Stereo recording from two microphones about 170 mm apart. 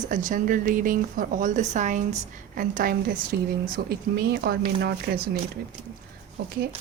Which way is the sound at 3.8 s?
85° right.